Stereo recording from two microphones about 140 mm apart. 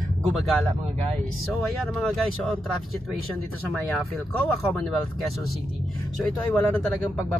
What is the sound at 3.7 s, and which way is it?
Speech, 5° left (ahead or behind).